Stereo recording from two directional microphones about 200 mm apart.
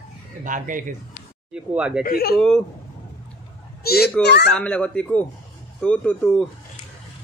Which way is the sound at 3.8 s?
50° left (ahead or behind).